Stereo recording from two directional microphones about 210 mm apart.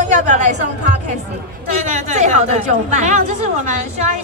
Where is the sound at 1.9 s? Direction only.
35° right (ahead or behind).